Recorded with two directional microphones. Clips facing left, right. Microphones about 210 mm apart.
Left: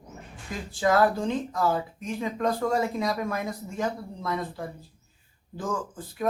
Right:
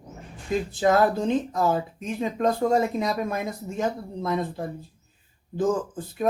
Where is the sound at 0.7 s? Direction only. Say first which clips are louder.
Right 1 dB; 20° right (ahead or behind).